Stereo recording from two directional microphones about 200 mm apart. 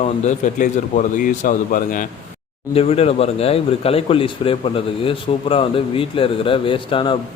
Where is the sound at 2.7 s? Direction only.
30° left (ahead or behind).